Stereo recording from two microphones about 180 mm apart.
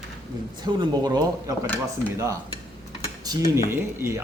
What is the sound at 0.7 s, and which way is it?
Speech, 25° right (ahead or behind).